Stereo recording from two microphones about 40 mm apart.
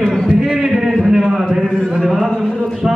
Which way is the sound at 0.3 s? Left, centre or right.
Centre.